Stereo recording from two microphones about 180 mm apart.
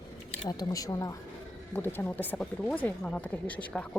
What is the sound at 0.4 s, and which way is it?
Speech, 20° left (ahead or behind).